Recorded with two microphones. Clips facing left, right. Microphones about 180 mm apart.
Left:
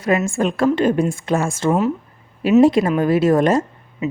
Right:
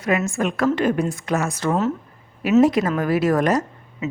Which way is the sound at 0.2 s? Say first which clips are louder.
Left 3 dB; 30° left (ahead or behind).